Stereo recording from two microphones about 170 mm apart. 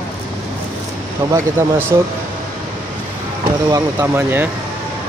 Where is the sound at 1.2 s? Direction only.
20° right (ahead or behind).